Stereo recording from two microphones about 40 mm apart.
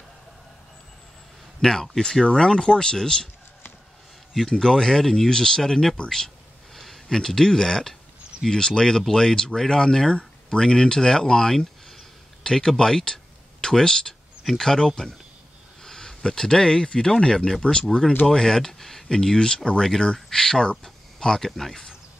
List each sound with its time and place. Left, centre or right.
1.6 s speech: centre
4.3 s speech: centre
6.0 s a sound: centre
8.5 s speech: centre